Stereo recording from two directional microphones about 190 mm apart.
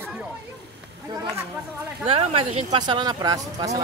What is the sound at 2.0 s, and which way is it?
Speech, 30° right (ahead or behind).